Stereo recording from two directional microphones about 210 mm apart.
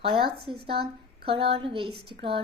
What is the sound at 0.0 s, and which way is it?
Speech, 25° right (ahead or behind).